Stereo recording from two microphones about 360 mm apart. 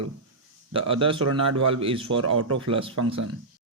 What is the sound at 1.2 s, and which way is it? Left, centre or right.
A man's voice, right.